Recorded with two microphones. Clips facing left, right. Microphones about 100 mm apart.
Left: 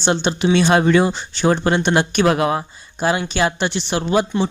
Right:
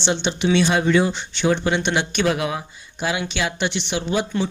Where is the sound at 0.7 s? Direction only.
55° left (ahead or behind).